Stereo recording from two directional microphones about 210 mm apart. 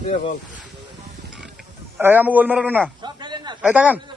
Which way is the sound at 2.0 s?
10° right (ahead or behind).